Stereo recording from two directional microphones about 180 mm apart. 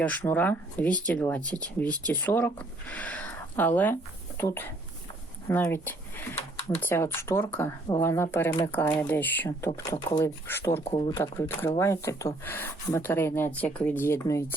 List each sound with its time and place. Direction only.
0.2 s speech: 10° left (ahead or behind)
10.8 s speech: 30° left (ahead or behind)
11.2 s speech: 15° left (ahead or behind)